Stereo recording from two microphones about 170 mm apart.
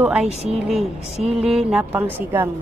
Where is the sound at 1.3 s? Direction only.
5° right (ahead or behind).